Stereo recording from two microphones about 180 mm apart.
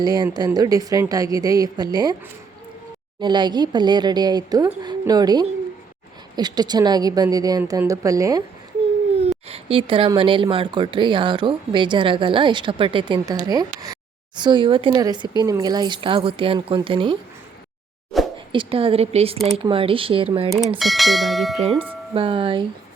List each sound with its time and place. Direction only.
0.0 s a woman's voice: 20° right (ahead or behind)
3.2 s a woman's voice: 25° right (ahead or behind)
9.5 s a woman's voice: 30° right (ahead or behind)
18.1 s plop: centre (ahead or behind)
18.5 s a woman's voice: 30° right (ahead or behind)
20.7 s speech: centre (ahead or behind)
22.1 s a woman's voice: 30° right (ahead or behind)